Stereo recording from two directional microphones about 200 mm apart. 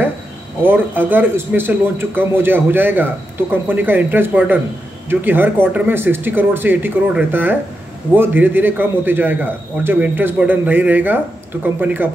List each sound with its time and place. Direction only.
0.6 s a man's voice: 10° right (ahead or behind)